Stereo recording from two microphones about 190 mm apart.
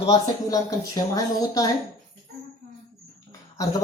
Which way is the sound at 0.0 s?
20° left (ahead or behind).